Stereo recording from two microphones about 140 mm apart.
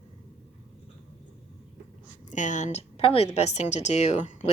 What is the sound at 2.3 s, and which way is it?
A woman's voice, 60° left (ahead or behind).